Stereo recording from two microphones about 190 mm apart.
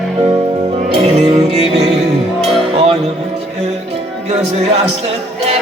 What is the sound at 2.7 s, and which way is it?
Music, 30° right (ahead or behind).